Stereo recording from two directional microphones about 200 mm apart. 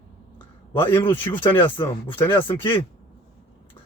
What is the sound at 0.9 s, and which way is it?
A man's voice, 10° left (ahead or behind).